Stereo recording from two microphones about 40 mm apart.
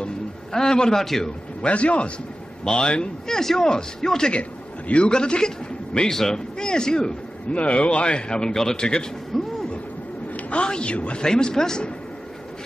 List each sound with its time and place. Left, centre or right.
0.0 s a sound: centre
1.0 s a man's voice: centre
1.6 s speech: left
2.6 s a man's voice: centre
4.3 s a man's voice: left
7.5 s speech: left
9.3 s vehicle: centre
10.6 s a man's voice: left
11.2 s a man's voice: centre